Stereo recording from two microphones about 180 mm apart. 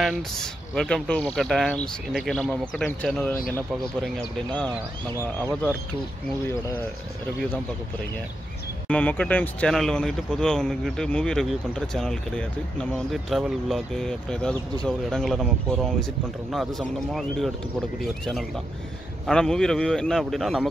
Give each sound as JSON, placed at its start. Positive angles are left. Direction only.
{"t": 0.0, "sound": "speech", "side_deg": 5}
{"t": 8.8, "sound": "speech", "side_deg": 5}